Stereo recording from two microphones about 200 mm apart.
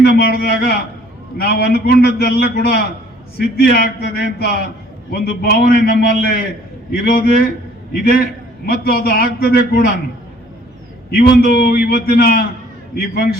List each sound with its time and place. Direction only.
0.0 s a man's voice: 50° left (ahead or behind)
11.1 s a man's voice: 50° left (ahead or behind)